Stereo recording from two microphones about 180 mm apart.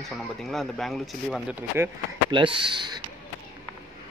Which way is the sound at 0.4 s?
Centre (ahead or behind).